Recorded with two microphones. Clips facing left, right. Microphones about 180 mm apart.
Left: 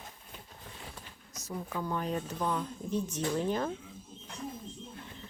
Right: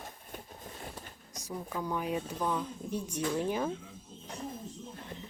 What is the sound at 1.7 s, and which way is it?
Speech, 10° right (ahead or behind).